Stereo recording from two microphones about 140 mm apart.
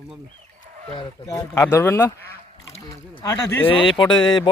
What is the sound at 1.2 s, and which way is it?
Speech, 25° left (ahead or behind).